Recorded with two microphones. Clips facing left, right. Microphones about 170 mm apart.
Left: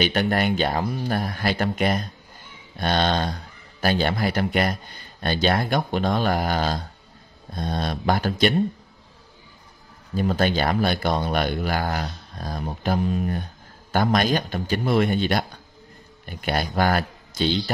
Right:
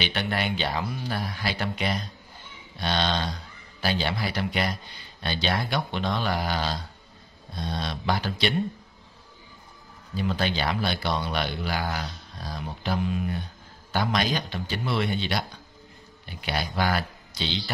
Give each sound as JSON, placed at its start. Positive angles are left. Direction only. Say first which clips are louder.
{"t": 0.0, "sound": "a man's voice", "louder": "left 7 dB", "side_deg": 45}
{"t": 10.1, "sound": "a man's voice", "louder": "left 5 dB", "side_deg": 45}